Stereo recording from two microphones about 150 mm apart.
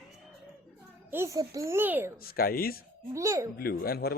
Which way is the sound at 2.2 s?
90° left.